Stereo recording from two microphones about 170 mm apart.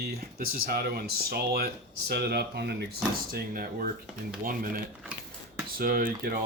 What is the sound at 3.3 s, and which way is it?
Speech, 60° right (ahead or behind).